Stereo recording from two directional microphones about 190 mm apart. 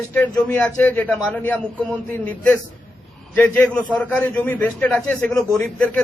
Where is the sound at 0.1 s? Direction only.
10° left (ahead or behind).